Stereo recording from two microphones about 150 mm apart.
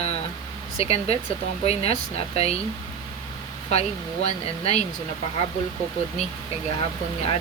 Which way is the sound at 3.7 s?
45° left (ahead or behind).